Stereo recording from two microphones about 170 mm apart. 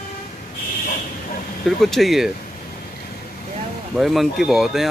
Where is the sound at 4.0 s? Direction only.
Centre (ahead or behind).